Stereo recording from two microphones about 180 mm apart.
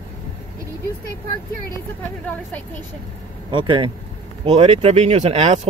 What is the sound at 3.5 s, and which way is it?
Speech, 25° right (ahead or behind).